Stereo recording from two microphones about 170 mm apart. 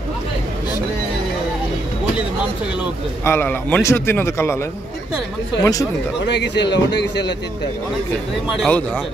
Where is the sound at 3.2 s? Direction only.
15° left (ahead or behind).